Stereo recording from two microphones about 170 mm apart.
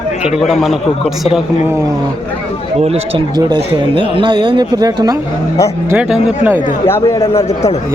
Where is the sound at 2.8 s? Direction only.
35° right (ahead or behind).